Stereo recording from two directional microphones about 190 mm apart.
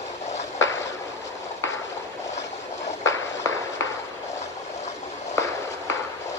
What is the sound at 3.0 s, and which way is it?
Walk, 15° left (ahead or behind).